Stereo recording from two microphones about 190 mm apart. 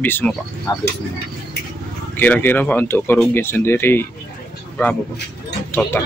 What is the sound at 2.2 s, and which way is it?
Speech, 10° left (ahead or behind).